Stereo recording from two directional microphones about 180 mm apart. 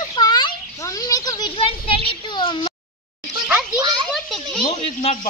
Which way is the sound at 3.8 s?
25° right (ahead or behind).